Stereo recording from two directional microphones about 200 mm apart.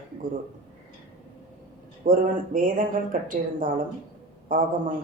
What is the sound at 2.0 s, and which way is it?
Speech, 45° right (ahead or behind).